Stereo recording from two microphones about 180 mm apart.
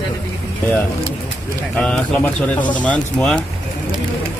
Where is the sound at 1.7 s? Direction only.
5° left (ahead or behind).